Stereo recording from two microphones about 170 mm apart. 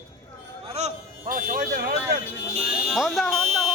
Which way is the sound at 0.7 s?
40° right (ahead or behind).